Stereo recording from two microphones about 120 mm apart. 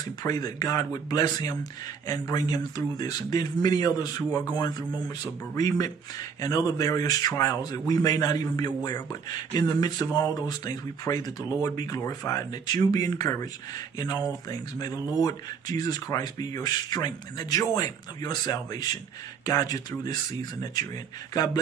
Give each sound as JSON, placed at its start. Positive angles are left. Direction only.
{"t": 0.0, "sound": "speech", "side_deg": 35}